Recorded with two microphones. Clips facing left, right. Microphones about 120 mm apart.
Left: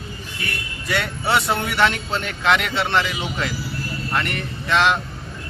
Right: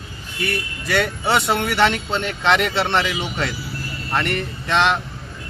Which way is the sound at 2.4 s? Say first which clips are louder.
Right 1 dB; 30° right (ahead or behind).